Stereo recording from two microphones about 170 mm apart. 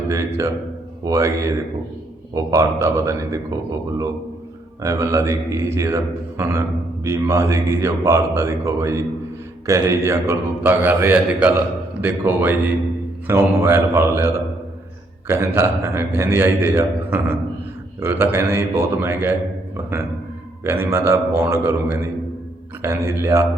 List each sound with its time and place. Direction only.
0.1 s a man's voice: 20° right (ahead or behind)
4.8 s speech: 20° right (ahead or behind)
20.7 s speech: 15° right (ahead or behind)